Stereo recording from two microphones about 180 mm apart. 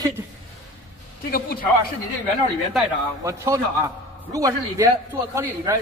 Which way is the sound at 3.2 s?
15° right (ahead or behind).